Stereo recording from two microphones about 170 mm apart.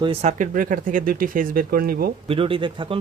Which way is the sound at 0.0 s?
35° right (ahead or behind).